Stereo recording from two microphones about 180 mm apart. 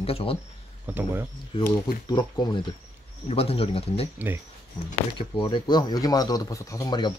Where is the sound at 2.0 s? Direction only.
25° left (ahead or behind).